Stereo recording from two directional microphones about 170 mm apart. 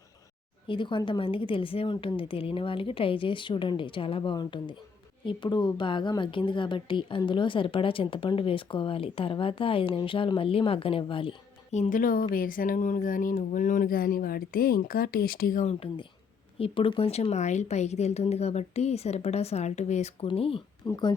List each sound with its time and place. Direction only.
0.7 s a woman's voice: 30° left (ahead or behind)
11.7 s a woman's voice: 45° left (ahead or behind)
15.6 s a woman's voice: 35° left (ahead or behind)